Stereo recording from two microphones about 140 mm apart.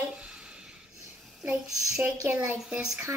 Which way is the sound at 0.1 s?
5° right (ahead or behind).